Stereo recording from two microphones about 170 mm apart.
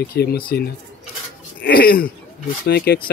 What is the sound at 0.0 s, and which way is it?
Speech, 65° left (ahead or behind).